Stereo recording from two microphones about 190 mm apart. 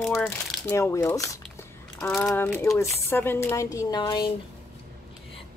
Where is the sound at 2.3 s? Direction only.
10° left (ahead or behind).